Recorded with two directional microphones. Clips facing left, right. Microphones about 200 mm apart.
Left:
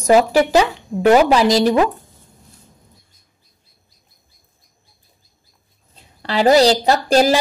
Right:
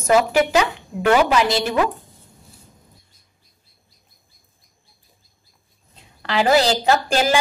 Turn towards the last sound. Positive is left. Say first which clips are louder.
# left 4 dB
turn(degrees=35)  # may be behind; listen again after turning